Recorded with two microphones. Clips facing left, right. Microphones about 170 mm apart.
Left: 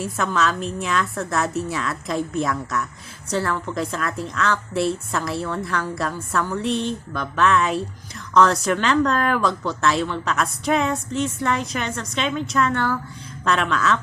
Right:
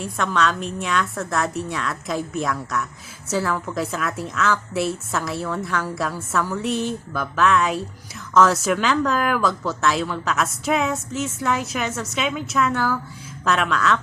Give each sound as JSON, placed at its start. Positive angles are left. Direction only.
{"t": 0.0, "sound": "speech", "side_deg": 0}